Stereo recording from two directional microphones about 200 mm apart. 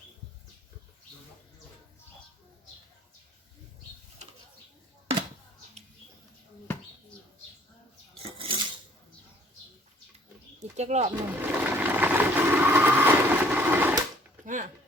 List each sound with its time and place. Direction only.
8.4 s filing: 25° right (ahead or behind)
10.6 s pigeon: 35° right (ahead or behind)
11.3 s vehicle: 10° right (ahead or behind)
14.4 s a sound: 40° right (ahead or behind)